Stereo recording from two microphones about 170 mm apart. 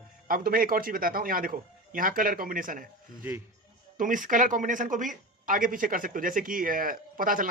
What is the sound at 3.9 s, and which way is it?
Speech, 50° right (ahead or behind).